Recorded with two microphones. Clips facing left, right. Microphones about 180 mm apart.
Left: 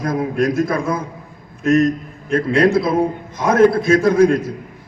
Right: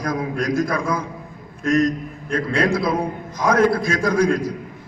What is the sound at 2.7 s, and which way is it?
A man's voice, 25° left (ahead or behind).